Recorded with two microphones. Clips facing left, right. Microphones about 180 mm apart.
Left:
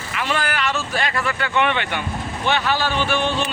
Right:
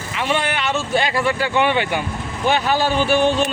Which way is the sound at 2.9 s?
40° right (ahead or behind).